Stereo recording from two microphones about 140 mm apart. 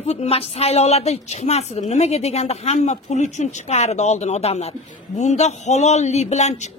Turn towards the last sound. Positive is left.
turn(degrees=55)  # may be behind; listen again after turning